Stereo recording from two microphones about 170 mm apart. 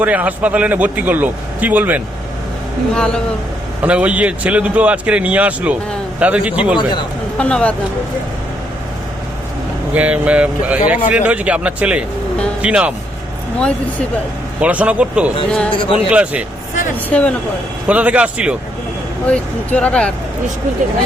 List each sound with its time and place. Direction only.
0.0 s a man's voice: 10° right (ahead or behind)
2.9 s speech: 5° left (ahead or behind)
3.8 s a man's voice: 10° right (ahead or behind)
7.3 s speech: 5° left (ahead or behind)
9.9 s a man's voice: 10° right (ahead or behind)
14.6 s a man's voice: 10° right (ahead or behind)
15.4 s speech: 5° left (ahead or behind)
15.7 s speech: 30° left (ahead or behind)
16.0 s a man's voice: 5° right (ahead or behind)
17.1 s speech: 10° left (ahead or behind)
17.8 s a man's voice: 10° right (ahead or behind)
19.3 s speech: 5° left (ahead or behind)